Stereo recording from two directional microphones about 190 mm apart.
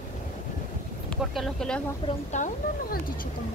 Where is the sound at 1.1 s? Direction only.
Centre (ahead or behind).